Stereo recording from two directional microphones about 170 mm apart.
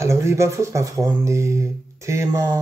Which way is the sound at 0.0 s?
15° right (ahead or behind).